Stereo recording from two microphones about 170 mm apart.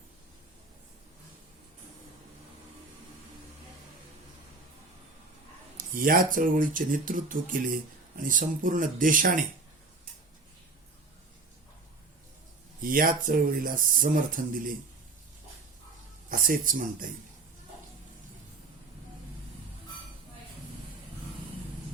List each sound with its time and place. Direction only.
5.9 s speech: 55° right (ahead or behind)
12.8 s speech: 55° right (ahead or behind)
16.3 s speech: 55° right (ahead or behind)